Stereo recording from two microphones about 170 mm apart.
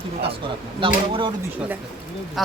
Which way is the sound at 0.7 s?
30° right (ahead or behind).